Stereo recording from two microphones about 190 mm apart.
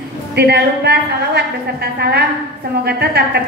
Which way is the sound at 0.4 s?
60° right (ahead or behind).